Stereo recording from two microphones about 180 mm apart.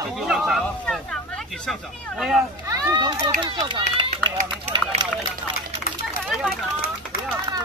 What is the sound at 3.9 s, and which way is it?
Run, 30° right (ahead or behind).